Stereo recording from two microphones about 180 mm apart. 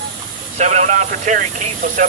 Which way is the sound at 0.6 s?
40° right (ahead or behind).